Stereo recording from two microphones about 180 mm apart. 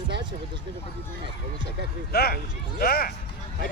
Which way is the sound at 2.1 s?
60° left (ahead or behind).